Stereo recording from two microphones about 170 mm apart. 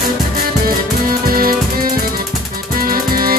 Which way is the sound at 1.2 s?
60° right (ahead or behind).